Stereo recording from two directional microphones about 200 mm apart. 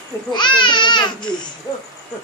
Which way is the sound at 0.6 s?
25° left (ahead or behind).